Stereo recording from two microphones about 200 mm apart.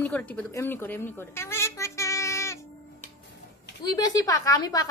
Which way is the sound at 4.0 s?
15° left (ahead or behind).